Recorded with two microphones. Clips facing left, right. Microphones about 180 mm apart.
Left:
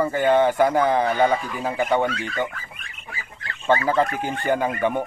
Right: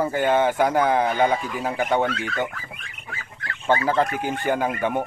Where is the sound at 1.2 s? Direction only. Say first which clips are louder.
Left 1 dB; centre (ahead or behind).